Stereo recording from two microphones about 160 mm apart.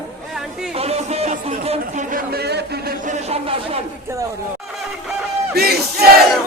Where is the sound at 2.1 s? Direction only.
70° right (ahead or behind); by 2.9 s 90° right.